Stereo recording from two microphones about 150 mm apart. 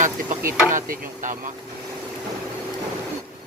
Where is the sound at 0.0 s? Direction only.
60° right (ahead or behind).